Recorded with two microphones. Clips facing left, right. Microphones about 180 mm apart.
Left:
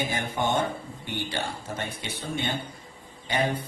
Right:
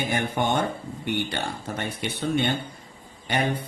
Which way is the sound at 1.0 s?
65° right (ahead or behind).